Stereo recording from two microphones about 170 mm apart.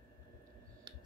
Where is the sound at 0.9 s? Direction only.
25° right (ahead or behind).